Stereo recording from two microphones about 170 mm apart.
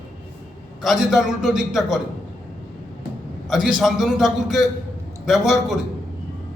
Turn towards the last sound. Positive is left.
turn(degrees=0)  # may be behind; listen again after turning